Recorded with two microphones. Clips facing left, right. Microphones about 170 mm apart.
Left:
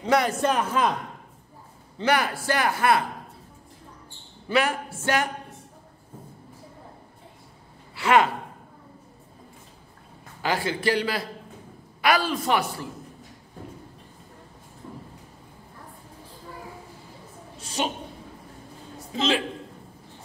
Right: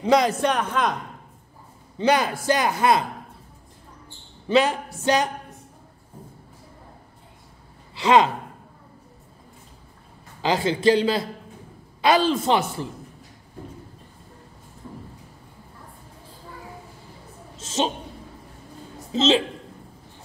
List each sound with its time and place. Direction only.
0.0 s speech: 15° right (ahead or behind)
0.4 s speech: 5° left (ahead or behind)
2.0 s speech: 20° right (ahead or behind)
4.5 s speech: 20° right (ahead or behind)
7.9 s speech: 20° right (ahead or behind)
10.4 s speech: 20° right (ahead or behind)
17.6 s a sound: 20° right (ahead or behind)
19.1 s speech: 25° right (ahead or behind)